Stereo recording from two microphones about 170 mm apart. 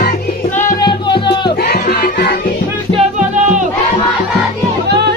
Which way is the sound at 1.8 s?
65° left (ahead or behind).